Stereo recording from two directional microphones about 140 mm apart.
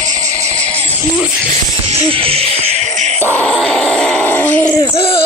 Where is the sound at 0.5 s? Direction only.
10° left (ahead or behind).